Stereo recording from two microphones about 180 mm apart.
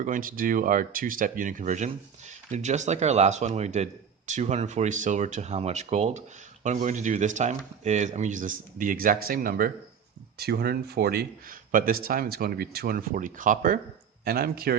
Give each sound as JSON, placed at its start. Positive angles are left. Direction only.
{"t": 0.0, "sound": "speech", "side_deg": -50}